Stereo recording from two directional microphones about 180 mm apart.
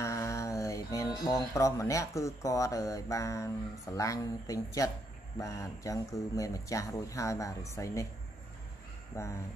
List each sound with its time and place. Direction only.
0.0 s speech: 15° left (ahead or behind)
9.1 s speech: 15° left (ahead or behind)